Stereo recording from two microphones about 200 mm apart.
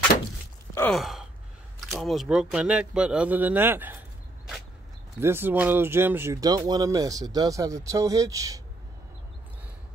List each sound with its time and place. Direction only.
0.7 s sigh: 5° left (ahead or behind)
1.9 s speech: centre (ahead or behind)
5.2 s speech: 10° right (ahead or behind)